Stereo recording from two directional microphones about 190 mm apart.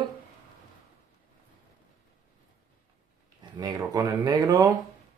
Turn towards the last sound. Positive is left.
turn(degrees=-20)  # may be behind; listen again after turning